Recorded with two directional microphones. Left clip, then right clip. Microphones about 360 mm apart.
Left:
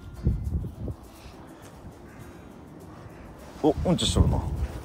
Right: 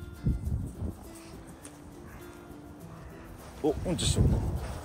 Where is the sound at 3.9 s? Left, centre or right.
Left.